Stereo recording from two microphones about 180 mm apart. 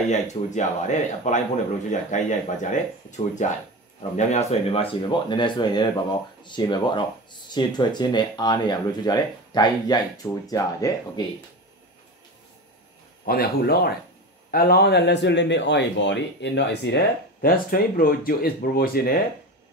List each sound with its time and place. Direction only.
0.1 s speech: 40° left (ahead or behind); by 11.2 s 20° left (ahead or behind)
13.2 s speech: 55° left (ahead or behind)